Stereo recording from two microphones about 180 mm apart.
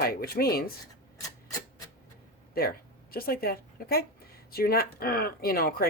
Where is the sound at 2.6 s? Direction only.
55° left (ahead or behind).